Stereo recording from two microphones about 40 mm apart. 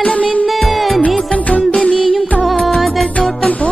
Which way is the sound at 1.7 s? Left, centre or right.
Left.